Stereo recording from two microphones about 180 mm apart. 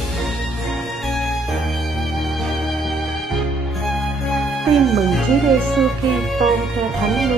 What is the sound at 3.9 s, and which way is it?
Music, centre (ahead or behind).